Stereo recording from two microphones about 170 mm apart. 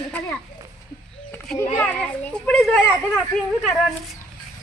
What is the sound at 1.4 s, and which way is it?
A child's voice, 5° left (ahead or behind).